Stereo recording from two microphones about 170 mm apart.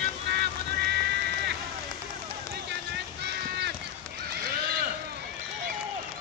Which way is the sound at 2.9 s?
80° right.